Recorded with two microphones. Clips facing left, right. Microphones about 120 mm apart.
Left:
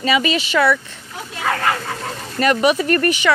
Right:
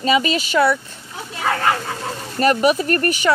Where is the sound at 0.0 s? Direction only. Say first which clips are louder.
Even; 40° right (ahead or behind).